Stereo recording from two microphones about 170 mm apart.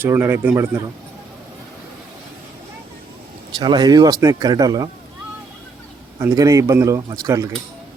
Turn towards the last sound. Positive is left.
turn(degrees=-20)  # may be behind; listen again after turning